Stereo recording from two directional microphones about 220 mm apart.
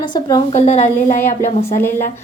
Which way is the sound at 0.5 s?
30° left (ahead or behind).